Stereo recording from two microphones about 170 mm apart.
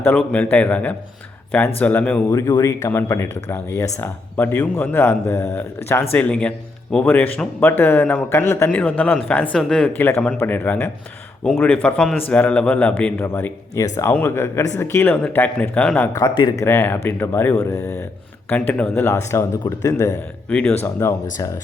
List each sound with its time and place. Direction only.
0.0 s a man's voice: 10° left (ahead or behind)
16.1 s speech: 25° left (ahead or behind)
16.6 s a man's voice: 10° left (ahead or behind)
20.5 s a man's voice: 5° left (ahead or behind)